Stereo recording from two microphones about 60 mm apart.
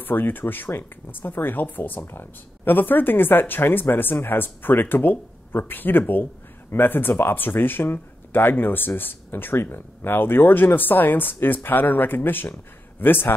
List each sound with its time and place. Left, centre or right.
0.0 s speech: left